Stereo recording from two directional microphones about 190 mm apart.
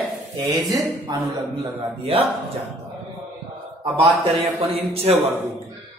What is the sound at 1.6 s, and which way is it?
Speech, 30° right (ahead or behind).